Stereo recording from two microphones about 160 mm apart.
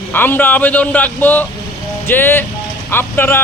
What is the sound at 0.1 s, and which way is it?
A man's voice, 10° left (ahead or behind).